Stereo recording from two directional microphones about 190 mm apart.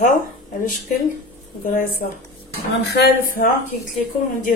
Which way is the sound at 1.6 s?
45° left (ahead or behind).